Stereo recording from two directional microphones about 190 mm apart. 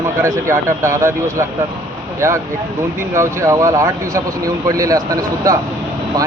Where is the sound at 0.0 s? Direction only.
15° right (ahead or behind).